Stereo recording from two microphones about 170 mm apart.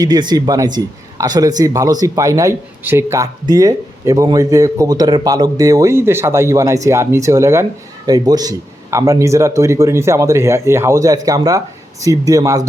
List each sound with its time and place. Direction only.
0.0 s a man's voice: 25° right (ahead or behind)